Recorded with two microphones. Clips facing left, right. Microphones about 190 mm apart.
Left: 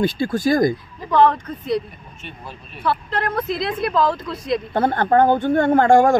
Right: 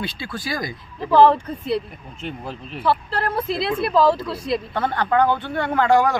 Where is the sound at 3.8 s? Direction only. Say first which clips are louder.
Right 3 dB; 5° right (ahead or behind).